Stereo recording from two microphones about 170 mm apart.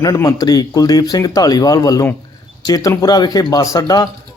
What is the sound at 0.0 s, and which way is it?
A man's voice, 20° left (ahead or behind).